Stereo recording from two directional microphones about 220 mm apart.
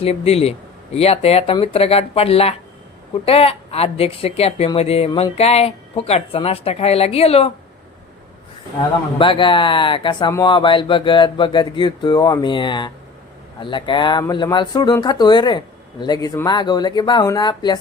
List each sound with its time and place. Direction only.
0.0 s speech: 25° left (ahead or behind)
9.1 s speech: 25° left (ahead or behind)